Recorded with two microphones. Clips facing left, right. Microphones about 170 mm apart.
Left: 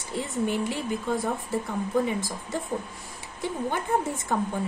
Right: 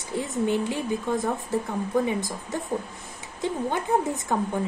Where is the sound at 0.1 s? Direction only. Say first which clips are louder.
Right 3 dB; 15° right (ahead or behind).